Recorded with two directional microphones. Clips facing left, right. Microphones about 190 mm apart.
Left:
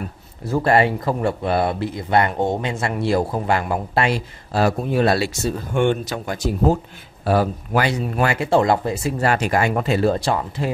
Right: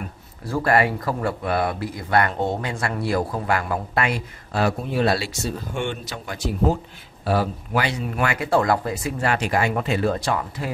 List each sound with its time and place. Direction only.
0.5 s speech: 25° left (ahead or behind); by 7.9 s 45° left (ahead or behind)
8.2 s speech: 30° left (ahead or behind)
9.2 s speech: 40° left (ahead or behind)